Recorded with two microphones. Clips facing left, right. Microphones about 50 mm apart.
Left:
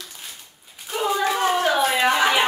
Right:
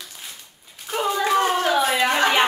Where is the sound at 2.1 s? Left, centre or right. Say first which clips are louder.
Even; centre.